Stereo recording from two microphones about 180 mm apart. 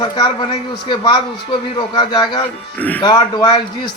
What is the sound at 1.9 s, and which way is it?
Speech, 25° left (ahead or behind).